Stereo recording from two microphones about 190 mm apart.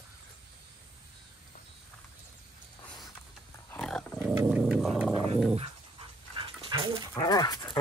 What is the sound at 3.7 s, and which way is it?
Dog, 5° left (ahead or behind).